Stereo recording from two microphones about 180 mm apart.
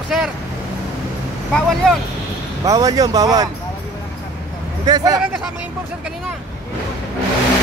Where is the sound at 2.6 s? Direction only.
20° right (ahead or behind).